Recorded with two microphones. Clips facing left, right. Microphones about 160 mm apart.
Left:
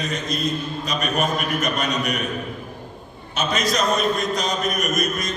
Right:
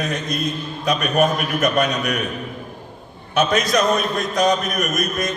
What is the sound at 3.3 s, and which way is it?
A man's voice, 55° right (ahead or behind).